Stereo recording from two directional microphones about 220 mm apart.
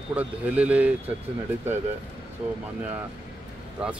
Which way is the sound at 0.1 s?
5° right (ahead or behind).